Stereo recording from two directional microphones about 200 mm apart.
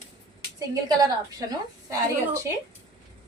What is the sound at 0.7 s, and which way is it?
A woman's voice, 20° right (ahead or behind).